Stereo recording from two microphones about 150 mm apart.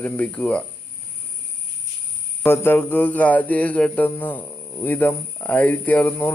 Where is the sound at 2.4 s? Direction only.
15° left (ahead or behind).